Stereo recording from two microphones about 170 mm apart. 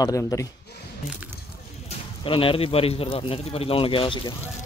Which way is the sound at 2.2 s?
30° left (ahead or behind).